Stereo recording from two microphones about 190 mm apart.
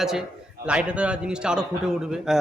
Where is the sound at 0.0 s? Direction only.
Centre (ahead or behind).